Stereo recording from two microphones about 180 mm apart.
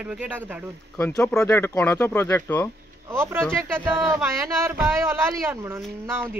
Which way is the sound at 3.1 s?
15° right (ahead or behind).